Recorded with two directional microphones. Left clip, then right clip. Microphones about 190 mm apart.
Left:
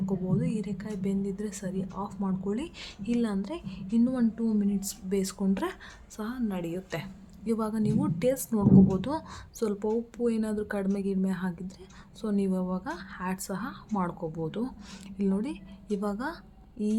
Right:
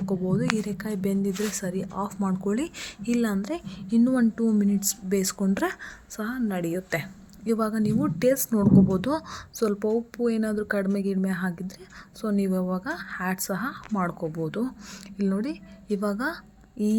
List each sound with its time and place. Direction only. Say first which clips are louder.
0.0 s a woman's voice: right 4 dB; 30° right (ahead or behind)